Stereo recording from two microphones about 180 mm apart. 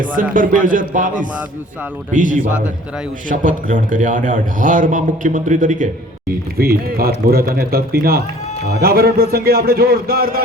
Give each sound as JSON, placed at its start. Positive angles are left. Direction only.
{"t": 0.0, "sound": "a man's voice", "side_deg": -50}
{"t": 6.6, "sound": "a man's voice", "side_deg": -55}